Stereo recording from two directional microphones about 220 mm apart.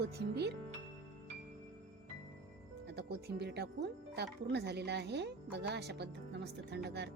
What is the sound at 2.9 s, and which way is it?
Speech, 45° right (ahead or behind).